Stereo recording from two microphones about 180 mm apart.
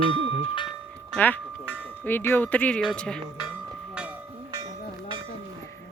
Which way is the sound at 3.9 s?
10° right (ahead or behind).